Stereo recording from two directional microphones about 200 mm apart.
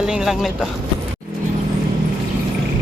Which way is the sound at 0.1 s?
Centre (ahead or behind).